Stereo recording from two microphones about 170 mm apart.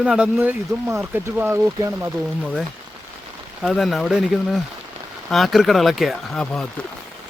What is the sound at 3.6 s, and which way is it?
Speech, centre (ahead or behind).